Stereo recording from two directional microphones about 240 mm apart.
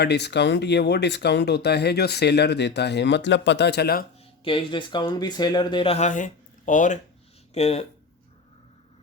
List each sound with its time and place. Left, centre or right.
0.0 s speech: left
4.4 s speech: left